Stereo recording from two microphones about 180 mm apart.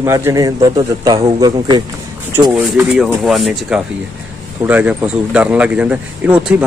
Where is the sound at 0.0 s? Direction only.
15° right (ahead or behind).